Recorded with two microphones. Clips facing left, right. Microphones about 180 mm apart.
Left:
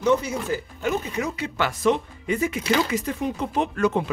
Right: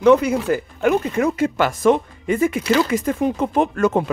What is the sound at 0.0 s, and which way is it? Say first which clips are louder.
Speech: right 8 dB; 60° right (ahead or behind).